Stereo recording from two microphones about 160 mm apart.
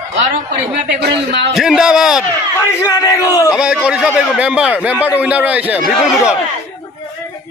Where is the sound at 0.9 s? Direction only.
90° right.